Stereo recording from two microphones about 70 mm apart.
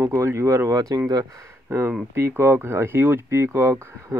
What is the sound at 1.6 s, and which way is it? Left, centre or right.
Speech, right.